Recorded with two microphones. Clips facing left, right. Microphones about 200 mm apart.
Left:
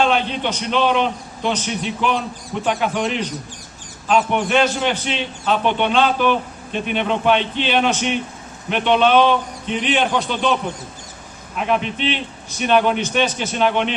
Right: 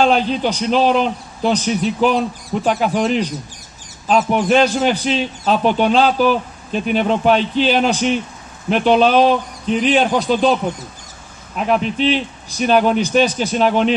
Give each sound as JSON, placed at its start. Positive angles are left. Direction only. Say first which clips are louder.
{"t": 0.0, "sound": "a man's voice", "louder": "right 4 dB", "side_deg": -35}
{"t": 11.6, "sound": "a man's voice", "louder": "right 4 dB", "side_deg": -35}